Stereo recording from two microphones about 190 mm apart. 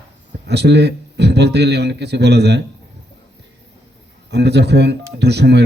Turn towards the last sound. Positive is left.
turn(degrees=-60)  # may be behind; listen again after turning